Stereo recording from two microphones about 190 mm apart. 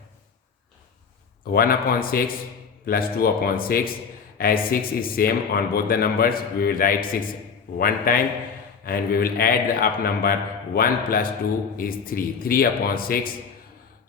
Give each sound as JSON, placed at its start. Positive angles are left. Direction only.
{"t": 1.5, "sound": "speech", "side_deg": 50}